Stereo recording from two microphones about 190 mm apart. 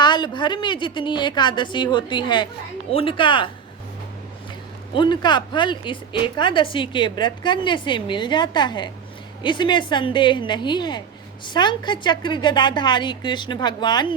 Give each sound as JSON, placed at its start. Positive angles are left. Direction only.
{"t": 0.0, "sound": "a woman's voice", "side_deg": 25}
{"t": 4.9, "sound": "a woman's voice", "side_deg": 25}